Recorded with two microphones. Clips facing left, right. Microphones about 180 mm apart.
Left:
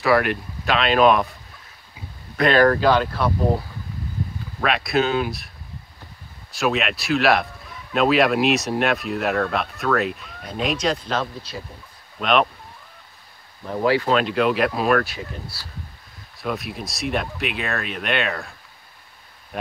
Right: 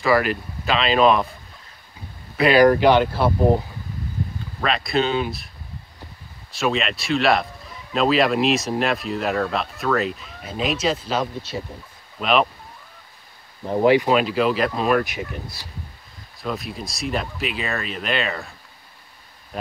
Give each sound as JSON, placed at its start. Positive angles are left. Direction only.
{"t": 0.0, "sound": "speech", "side_deg": 0}
{"t": 2.3, "sound": "speech", "side_deg": -10}
{"t": 4.6, "sound": "speech", "side_deg": 0}
{"t": 6.5, "sound": "speech", "side_deg": 0}
{"t": 13.7, "sound": "speech", "side_deg": -20}
{"t": 14.1, "sound": "speech", "side_deg": -5}
{"t": 15.0, "sound": "speech", "side_deg": -20}
{"t": 16.3, "sound": "speech", "side_deg": 0}